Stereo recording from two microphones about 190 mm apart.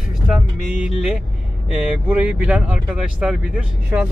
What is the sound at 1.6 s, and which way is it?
Speech, 5° right (ahead or behind).